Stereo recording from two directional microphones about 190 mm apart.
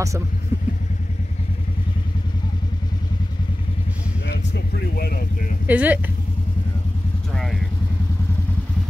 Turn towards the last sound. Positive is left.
turn(degrees=0)  # may be behind; listen again after turning